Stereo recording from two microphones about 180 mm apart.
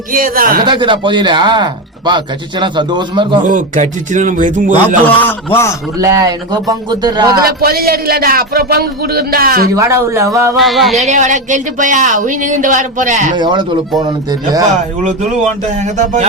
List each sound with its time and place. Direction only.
0.1 s speech: 50° right (ahead or behind)
0.6 s speech: 25° right (ahead or behind)
3.4 s speech: 45° right (ahead or behind)
5.0 s a man's voice: 10° left (ahead or behind)
6.0 s speech: 20° right (ahead or behind)
7.4 s a man's voice: 55° right (ahead or behind)
9.7 s a sound: 15° right (ahead or behind)
10.6 s music: centre (ahead or behind)
10.9 s speech: 40° right (ahead or behind)
13.3 s speech: 25° right (ahead or behind)
15.8 s speech: 40° right (ahead or behind)